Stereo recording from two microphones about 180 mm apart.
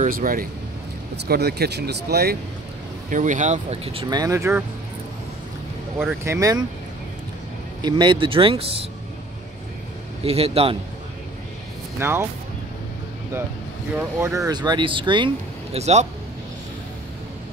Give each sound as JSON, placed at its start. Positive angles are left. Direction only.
{"t": 0.0, "sound": "speech", "side_deg": -50}
{"t": 1.1, "sound": "speech", "side_deg": -65}
{"t": 3.1, "sound": "speech", "side_deg": -45}
{"t": 4.0, "sound": "speech", "side_deg": -20}
{"t": 6.2, "sound": "speech", "side_deg": -15}
{"t": 7.8, "sound": "speech", "side_deg": -25}
{"t": 10.2, "sound": "a man's voice", "side_deg": -35}
{"t": 12.0, "sound": "speech", "side_deg": -15}
{"t": 13.9, "sound": "speech", "side_deg": -15}